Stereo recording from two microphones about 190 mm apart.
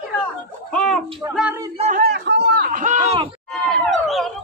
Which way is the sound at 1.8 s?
45° right (ahead or behind).